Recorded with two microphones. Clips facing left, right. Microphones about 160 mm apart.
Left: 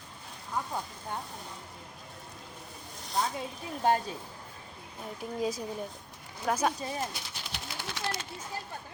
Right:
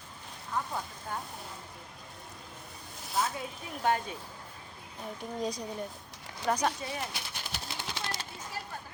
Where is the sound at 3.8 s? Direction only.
35° left (ahead or behind).